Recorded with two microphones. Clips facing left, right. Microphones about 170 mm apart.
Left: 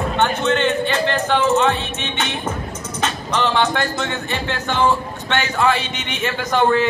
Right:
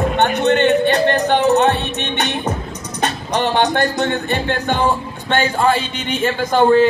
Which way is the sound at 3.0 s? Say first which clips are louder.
Right 2 dB; 60° right (ahead or behind).